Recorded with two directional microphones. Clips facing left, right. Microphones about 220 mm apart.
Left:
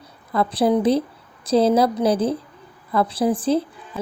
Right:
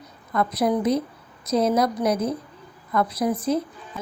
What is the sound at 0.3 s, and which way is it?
A woman's voice, 30° left (ahead or behind).